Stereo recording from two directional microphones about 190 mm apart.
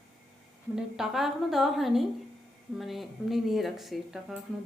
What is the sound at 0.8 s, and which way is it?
Speech, centre (ahead or behind).